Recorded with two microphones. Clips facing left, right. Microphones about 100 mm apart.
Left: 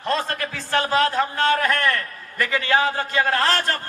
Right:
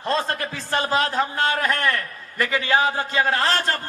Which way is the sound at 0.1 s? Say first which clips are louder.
Even; 20° right (ahead or behind).